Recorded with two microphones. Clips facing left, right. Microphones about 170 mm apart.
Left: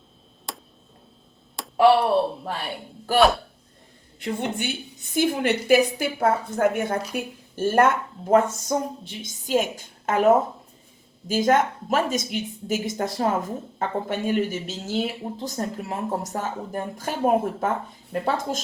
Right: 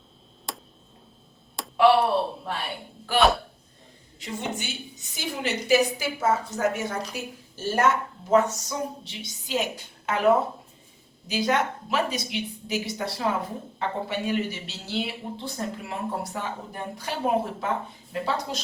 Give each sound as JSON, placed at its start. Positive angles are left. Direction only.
{"t": 0.5, "sound": "a sound", "side_deg": 0}
{"t": 3.2, "sound": "speech", "side_deg": 0}
{"t": 4.2, "sound": "a woman's voice", "side_deg": 55}